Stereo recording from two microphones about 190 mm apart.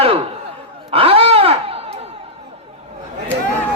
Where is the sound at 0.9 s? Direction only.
30° right (ahead or behind).